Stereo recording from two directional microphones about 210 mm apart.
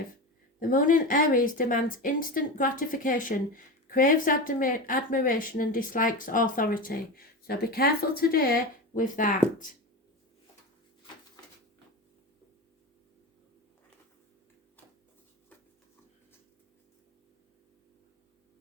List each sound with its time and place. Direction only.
0.6 s a woman's voice: 40° left (ahead or behind)